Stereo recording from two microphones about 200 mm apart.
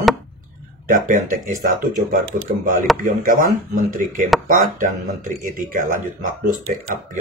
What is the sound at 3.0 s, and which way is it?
Speech, 40° right (ahead or behind).